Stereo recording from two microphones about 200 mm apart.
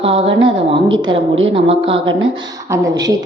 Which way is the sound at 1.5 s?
25° right (ahead or behind).